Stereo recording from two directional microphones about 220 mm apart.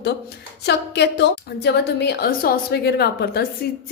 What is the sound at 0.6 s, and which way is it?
A woman's voice, 50° left (ahead or behind).